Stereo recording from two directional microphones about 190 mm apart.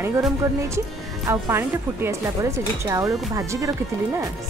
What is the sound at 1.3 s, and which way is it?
Speech, 15° right (ahead or behind).